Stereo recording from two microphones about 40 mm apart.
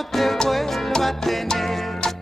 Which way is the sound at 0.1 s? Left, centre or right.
Centre.